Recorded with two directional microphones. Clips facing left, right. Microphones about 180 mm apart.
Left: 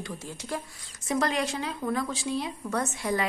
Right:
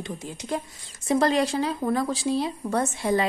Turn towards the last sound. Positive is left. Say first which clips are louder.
# right 5 dB
turn(degrees=-30)  # may be behind; listen again after turning